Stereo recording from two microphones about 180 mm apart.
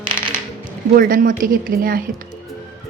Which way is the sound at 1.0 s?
50° right (ahead or behind).